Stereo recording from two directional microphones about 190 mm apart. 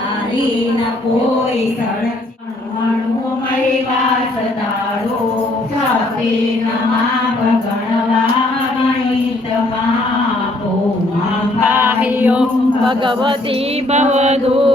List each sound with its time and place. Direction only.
11.6 s music: 10° right (ahead or behind)
13.9 s chant: 35° right (ahead or behind)